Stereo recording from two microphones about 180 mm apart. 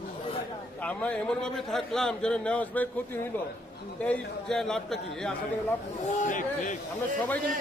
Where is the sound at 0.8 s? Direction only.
10° left (ahead or behind).